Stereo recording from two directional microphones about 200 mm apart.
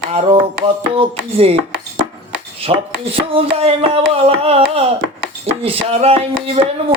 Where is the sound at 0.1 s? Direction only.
30° right (ahead or behind).